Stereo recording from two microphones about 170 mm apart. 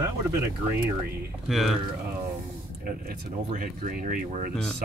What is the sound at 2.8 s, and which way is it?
Speech, 60° right (ahead or behind).